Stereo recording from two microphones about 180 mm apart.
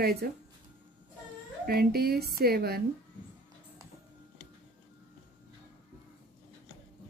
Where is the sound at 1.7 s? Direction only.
60° right (ahead or behind).